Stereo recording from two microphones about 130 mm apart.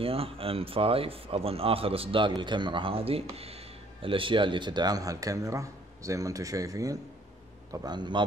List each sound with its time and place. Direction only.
0.0 s a man's voice: 45° right (ahead or behind)